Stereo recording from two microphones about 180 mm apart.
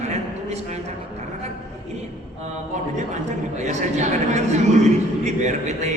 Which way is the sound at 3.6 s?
40° right (ahead or behind).